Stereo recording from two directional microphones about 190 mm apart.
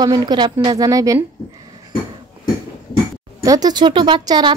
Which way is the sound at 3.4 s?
20° right (ahead or behind).